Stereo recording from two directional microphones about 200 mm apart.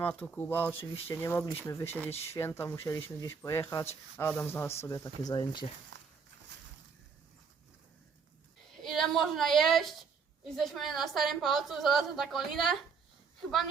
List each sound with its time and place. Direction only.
0.0 s speech: 10° left (ahead or behind)
5.9 s walk: 65° right (ahead or behind)
8.8 s a woman's voice: centre (ahead or behind)